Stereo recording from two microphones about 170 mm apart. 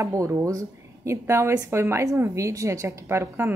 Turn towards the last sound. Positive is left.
turn(degrees=-15)  # may be behind; listen again after turning